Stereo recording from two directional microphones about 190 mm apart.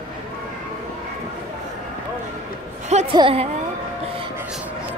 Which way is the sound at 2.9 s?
35° right (ahead or behind).